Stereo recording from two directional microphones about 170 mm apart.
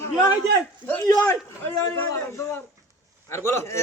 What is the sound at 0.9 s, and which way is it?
A man's voice, 10° left (ahead or behind).